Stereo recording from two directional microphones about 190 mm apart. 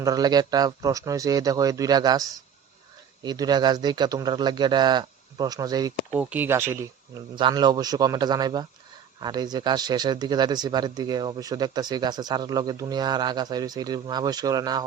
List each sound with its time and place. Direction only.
0.0 s speech: 20° right (ahead or behind)
6.1 s speech: 10° right (ahead or behind)
7.3 s speech: 25° right (ahead or behind)